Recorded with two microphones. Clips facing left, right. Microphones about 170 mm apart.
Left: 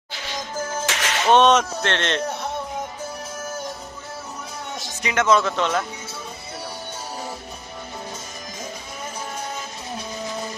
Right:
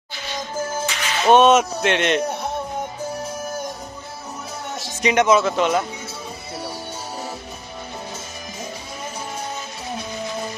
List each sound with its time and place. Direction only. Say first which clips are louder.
0.8 s music: even; 90° left
1.3 s speech: right 2 dB; 10° right (ahead or behind)
5.0 s speech: right 3 dB; 15° right (ahead or behind)